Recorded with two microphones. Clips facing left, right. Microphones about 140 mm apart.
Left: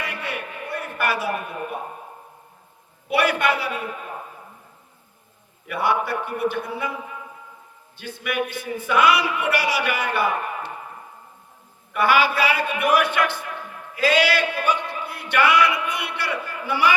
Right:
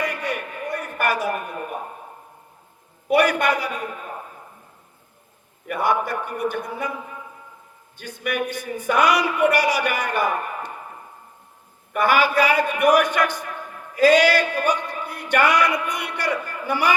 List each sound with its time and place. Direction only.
0.0 s a sound: 45° right (ahead or behind)
3.1 s a man's voice: 45° right (ahead or behind)
5.6 s a man's voice: 45° right (ahead or behind)
7.9 s a man's voice: 45° right (ahead or behind)
11.9 s a man's voice: 45° right (ahead or behind)
13.9 s a sound: 45° right (ahead or behind)